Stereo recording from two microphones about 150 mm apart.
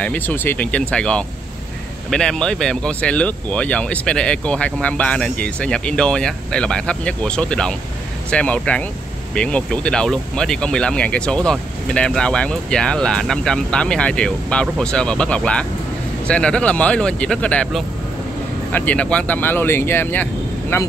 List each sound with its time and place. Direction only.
0.0 s speech: 10° left (ahead or behind)